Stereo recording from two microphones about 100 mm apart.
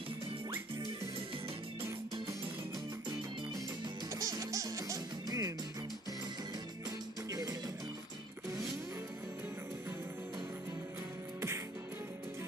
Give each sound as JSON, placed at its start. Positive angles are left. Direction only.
{"t": 3.1, "sound": "music", "side_deg": -45}
{"t": 4.1, "sound": "music", "side_deg": -35}
{"t": 7.2, "sound": "music", "side_deg": -35}